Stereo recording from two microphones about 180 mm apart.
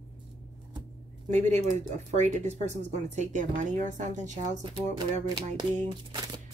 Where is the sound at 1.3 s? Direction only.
40° right (ahead or behind).